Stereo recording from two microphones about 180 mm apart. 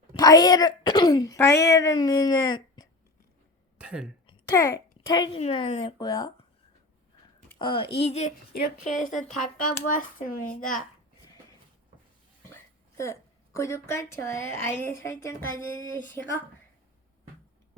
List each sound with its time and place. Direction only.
0.1 s speech: 20° left (ahead or behind)
3.8 s a sound: 5° right (ahead or behind)
4.3 s a child's voice: 20° left (ahead or behind)
7.6 s a child's voice: 30° left (ahead or behind)
9.2 s speech: 50° left (ahead or behind)
13.0 s a woman's voice: 15° left (ahead or behind)